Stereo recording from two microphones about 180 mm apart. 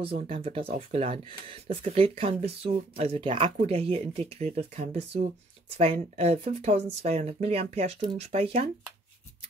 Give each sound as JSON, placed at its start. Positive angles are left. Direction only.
{"t": 0.0, "sound": "speech", "side_deg": -30}